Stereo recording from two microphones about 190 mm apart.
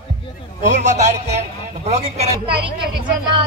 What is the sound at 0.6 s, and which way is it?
A man's voice, 40° right (ahead or behind).